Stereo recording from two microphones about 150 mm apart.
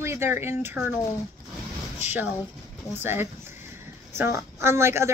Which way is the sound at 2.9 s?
15° right (ahead or behind).